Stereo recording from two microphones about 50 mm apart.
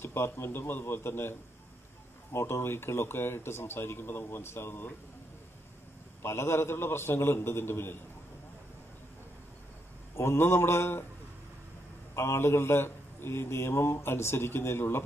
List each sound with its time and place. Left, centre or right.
0.0 s speech: left
2.3 s speech: left
4.4 s speech: left
6.2 s a man's voice: left
10.1 s a man's voice: left
12.2 s a man's voice: left